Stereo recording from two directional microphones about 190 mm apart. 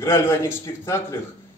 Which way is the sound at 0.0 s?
15° left (ahead or behind).